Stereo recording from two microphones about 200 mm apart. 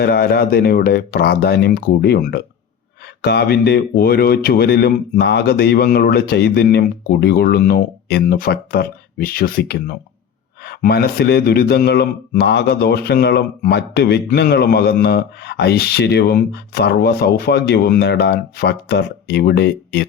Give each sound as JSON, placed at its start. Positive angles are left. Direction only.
{"t": 0.0, "sound": "speech", "side_deg": 50}